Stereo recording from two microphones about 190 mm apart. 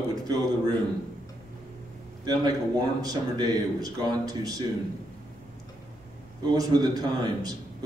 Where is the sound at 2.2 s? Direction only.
20° right (ahead or behind).